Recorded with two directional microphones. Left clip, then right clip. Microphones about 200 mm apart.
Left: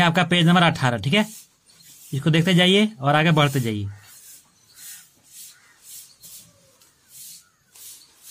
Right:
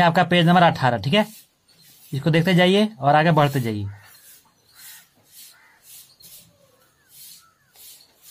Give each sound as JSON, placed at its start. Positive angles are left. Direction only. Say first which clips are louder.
{"t": 0.0, "sound": "speech", "louder": "right 2 dB", "side_deg": 15}